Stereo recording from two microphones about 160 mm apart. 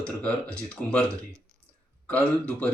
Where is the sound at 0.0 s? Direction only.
5° left (ahead or behind).